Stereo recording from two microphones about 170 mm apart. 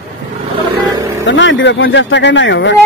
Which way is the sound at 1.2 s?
90° left.